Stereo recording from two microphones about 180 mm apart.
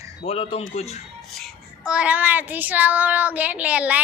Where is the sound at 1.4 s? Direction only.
Centre (ahead or behind).